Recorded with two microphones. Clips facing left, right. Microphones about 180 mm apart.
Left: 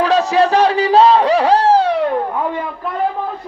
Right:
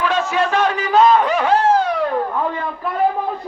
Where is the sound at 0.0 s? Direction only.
35° left (ahead or behind).